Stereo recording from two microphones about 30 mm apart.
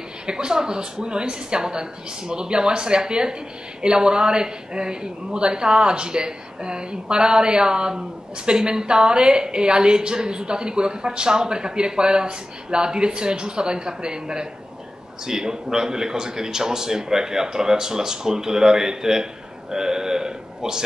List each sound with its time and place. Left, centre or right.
0.3 s a woman's voice: right